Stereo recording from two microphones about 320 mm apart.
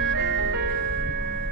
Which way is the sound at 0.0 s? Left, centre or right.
Right.